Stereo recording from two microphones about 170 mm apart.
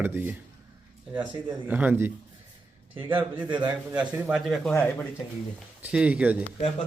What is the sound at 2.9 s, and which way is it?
Speech, 30° right (ahead or behind).